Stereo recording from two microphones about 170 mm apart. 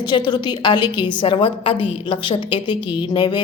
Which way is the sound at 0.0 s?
25° left (ahead or behind).